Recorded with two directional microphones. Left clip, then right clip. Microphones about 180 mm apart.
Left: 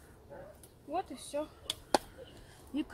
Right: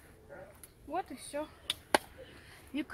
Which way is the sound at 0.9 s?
25° left (ahead or behind).